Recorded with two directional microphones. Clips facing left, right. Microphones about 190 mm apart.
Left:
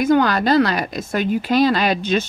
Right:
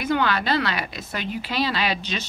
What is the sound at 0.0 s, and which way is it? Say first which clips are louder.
Speech: left 7 dB; 45° left (ahead or behind).